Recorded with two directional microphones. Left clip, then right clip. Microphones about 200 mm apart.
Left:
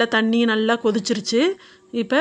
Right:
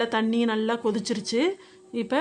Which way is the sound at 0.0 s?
15° left (ahead or behind).